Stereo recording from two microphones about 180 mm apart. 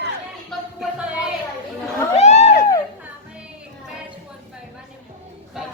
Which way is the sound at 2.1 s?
40° left (ahead or behind).